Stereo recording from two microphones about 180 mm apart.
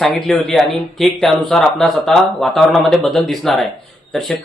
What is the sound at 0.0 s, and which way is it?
Speech, centre (ahead or behind).